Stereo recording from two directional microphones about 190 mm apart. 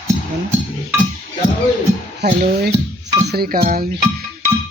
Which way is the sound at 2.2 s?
50° right (ahead or behind).